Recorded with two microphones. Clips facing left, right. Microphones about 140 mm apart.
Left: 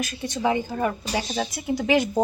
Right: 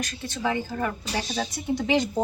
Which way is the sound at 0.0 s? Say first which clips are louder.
Left 4 dB; 15° left (ahead or behind).